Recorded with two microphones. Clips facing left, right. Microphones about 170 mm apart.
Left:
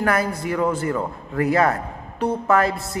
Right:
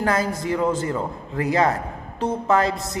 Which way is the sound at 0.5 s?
25° right (ahead or behind).